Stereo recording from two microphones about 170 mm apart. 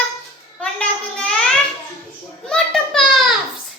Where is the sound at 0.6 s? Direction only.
5° left (ahead or behind).